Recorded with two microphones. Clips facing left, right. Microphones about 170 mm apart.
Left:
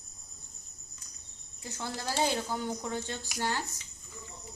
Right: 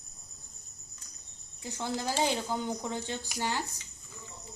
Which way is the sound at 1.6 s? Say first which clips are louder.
Right 3 dB; 15° right (ahead or behind).